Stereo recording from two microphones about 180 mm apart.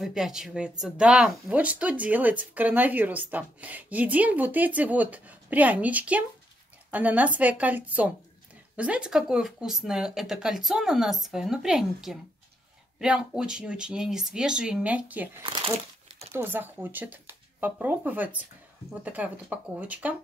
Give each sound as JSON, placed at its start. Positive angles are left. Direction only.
{"t": 0.0, "sound": "speech", "side_deg": -5}
{"t": 15.4, "sound": "speech", "side_deg": -30}
{"t": 16.3, "sound": "speech", "side_deg": -10}